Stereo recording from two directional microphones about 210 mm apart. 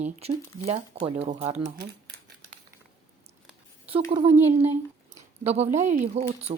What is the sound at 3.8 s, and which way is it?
Speech, 25° right (ahead or behind).